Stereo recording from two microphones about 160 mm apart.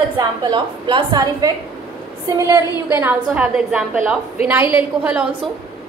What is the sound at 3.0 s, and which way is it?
A woman's voice, 10° right (ahead or behind).